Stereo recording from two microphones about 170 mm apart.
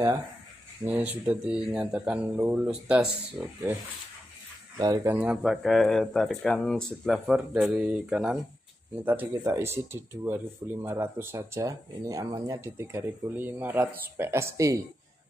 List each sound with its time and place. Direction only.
0.8 s speech: 10° right (ahead or behind)
4.7 s speech: 25° right (ahead or behind)
5.1 s speech: 5° right (ahead or behind)